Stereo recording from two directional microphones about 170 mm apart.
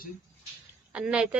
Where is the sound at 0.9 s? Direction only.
5° right (ahead or behind).